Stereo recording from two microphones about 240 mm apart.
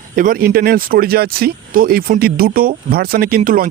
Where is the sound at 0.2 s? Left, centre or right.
Right.